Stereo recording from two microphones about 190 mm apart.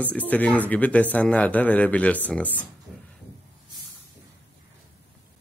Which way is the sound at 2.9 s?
Centre (ahead or behind).